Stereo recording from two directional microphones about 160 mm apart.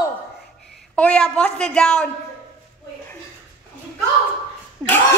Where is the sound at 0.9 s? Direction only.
5° left (ahead or behind).